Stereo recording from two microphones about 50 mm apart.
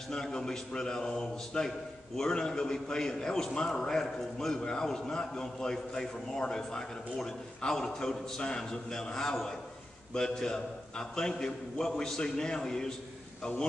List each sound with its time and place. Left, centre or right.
0.1 s a man's voice: centre